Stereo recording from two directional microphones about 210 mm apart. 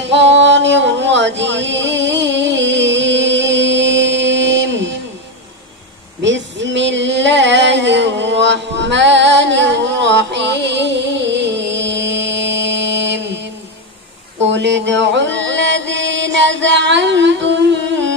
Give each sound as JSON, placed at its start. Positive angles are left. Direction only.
{"t": 0.0, "sound": "music", "side_deg": -60}
{"t": 6.2, "sound": "a sound", "side_deg": -60}
{"t": 14.4, "sound": "mantra", "side_deg": -55}